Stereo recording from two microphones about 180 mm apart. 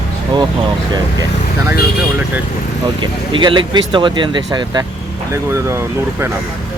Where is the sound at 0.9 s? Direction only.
20° right (ahead or behind).